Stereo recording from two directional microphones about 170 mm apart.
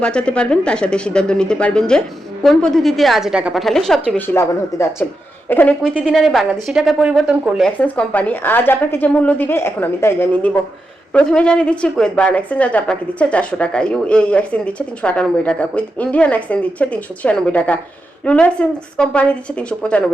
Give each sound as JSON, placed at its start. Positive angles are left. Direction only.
{"t": 0.0, "sound": "speech", "side_deg": 5}
{"t": 4.4, "sound": "a woman's voice", "side_deg": 15}
{"t": 7.8, "sound": "a woman's voice", "side_deg": 10}